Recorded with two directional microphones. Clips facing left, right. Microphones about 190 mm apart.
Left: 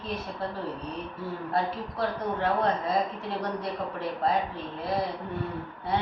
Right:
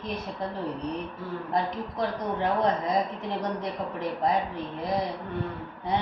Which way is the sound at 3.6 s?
15° right (ahead or behind).